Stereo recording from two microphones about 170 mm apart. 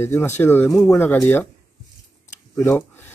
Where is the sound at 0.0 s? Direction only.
15° left (ahead or behind).